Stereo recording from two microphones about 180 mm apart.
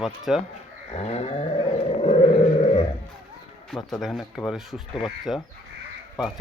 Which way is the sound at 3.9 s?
Centre (ahead or behind).